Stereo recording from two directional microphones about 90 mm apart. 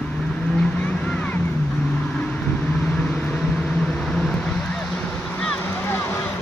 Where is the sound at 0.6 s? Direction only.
10° left (ahead or behind).